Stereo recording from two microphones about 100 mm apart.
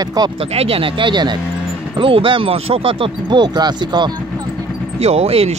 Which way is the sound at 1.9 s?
60° right (ahead or behind).